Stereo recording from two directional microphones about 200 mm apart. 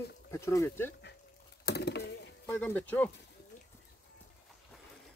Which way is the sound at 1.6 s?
55° left (ahead or behind).